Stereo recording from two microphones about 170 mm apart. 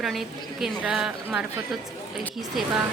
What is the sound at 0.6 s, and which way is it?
Speech, 5° right (ahead or behind).